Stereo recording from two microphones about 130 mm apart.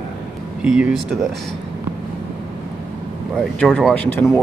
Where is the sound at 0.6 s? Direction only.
5° right (ahead or behind).